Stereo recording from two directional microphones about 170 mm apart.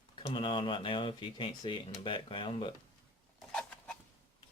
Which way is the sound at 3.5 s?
5° left (ahead or behind).